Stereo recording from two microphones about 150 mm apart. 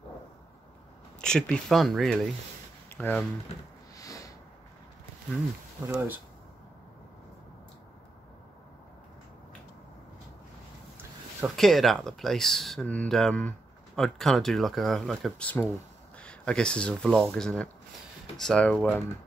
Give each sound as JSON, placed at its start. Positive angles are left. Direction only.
{"t": 1.2, "sound": "speech", "side_deg": 5}
{"t": 2.9, "sound": "speech", "side_deg": 10}
{"t": 3.9, "sound": "a sound", "side_deg": 20}
{"t": 5.9, "sound": "speech", "side_deg": -15}
{"t": 11.5, "sound": "speech", "side_deg": 0}